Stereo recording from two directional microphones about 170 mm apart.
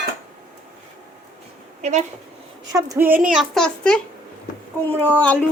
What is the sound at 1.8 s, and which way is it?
Speech, 40° right (ahead or behind).